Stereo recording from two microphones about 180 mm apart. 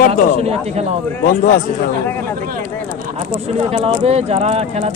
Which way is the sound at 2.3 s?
50° right (ahead or behind).